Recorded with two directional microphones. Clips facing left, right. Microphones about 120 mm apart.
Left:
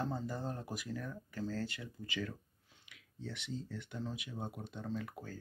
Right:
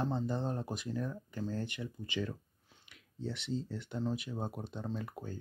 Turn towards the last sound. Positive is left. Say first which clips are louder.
# right 1 dB
turn(degrees=-25)  # may be behind; listen again after turning